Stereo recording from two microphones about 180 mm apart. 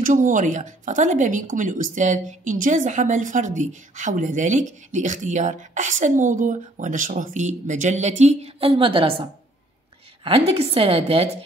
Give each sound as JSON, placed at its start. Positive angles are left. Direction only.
{"t": 0.0, "sound": "a woman's voice", "side_deg": -45}